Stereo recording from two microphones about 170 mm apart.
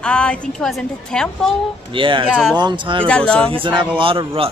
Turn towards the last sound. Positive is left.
turn(degrees=-35)  # may be behind; listen again after turning